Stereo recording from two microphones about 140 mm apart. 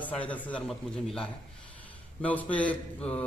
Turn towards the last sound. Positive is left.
turn(degrees=10)  # may be behind; listen again after turning